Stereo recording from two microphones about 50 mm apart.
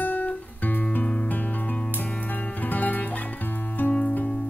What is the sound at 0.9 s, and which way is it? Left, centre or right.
Music, left.